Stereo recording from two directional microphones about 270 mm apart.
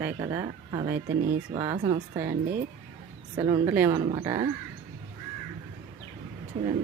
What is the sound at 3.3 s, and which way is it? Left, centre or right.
Speech, centre.